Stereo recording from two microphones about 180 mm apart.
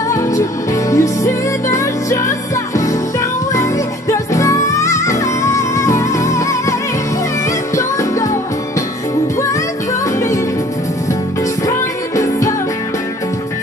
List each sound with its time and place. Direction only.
0.1 s music: 15° left (ahead or behind)
4.1 s music: 15° left (ahead or behind)
7.7 s music: 20° left (ahead or behind)
12.2 s music: 15° left (ahead or behind)